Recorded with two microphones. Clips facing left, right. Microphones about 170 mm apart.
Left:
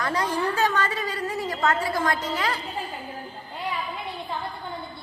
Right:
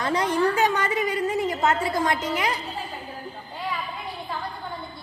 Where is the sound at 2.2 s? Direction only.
20° right (ahead or behind).